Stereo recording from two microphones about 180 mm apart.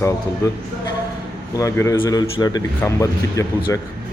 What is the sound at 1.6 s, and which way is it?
Speech, 15° left (ahead or behind).